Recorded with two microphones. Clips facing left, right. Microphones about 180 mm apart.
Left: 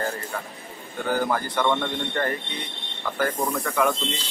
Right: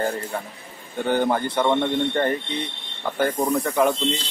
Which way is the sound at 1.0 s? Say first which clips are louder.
Right 4 dB; 25° right (ahead or behind).